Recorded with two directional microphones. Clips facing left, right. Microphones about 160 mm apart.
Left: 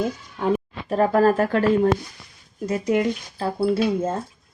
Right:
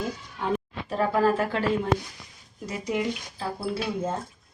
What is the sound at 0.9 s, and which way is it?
Speech, 45° left (ahead or behind).